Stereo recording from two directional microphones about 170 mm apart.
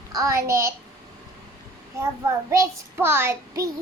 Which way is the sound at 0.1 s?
20° right (ahead or behind).